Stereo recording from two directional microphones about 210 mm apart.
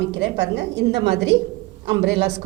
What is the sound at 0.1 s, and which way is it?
A woman's voice, 55° right (ahead or behind).